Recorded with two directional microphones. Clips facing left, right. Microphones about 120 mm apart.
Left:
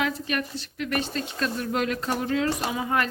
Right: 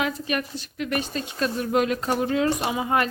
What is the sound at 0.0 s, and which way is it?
Speech, 20° right (ahead or behind).